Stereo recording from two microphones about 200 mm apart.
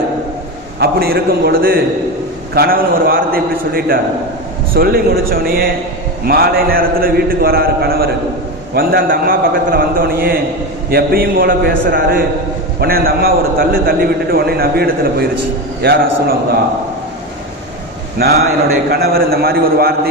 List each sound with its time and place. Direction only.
0.8 s a man's voice: 50° right (ahead or behind)
18.9 s a man's voice: 50° right (ahead or behind)